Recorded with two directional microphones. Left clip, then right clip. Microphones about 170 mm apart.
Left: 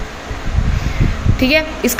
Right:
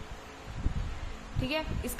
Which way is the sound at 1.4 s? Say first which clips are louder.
Left 19 dB; 20° left (ahead or behind).